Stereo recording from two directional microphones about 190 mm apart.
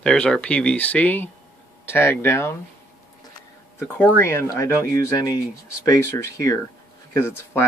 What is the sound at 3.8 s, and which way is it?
Speech, 15° left (ahead or behind).